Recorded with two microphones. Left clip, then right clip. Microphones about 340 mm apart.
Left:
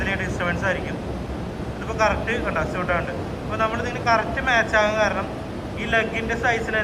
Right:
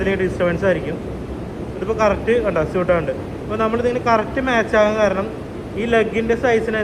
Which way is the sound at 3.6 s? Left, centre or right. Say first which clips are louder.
Right 5 dB; centre.